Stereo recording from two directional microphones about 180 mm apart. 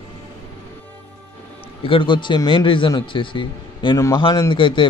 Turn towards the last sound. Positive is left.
turn(degrees=25)  # may be behind; listen again after turning